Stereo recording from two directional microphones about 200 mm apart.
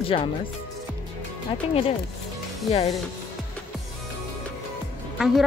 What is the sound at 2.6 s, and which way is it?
Speech, 30° left (ahead or behind).